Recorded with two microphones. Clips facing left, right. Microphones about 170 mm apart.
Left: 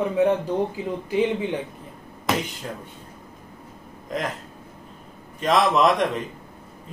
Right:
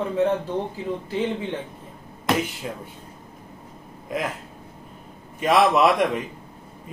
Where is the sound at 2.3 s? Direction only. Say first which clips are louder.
Right 2 dB; centre (ahead or behind).